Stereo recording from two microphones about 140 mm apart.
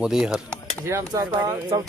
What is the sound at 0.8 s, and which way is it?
Speech, 20° right (ahead or behind).